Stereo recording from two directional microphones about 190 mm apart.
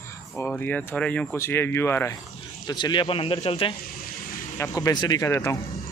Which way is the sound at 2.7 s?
25° left (ahead or behind).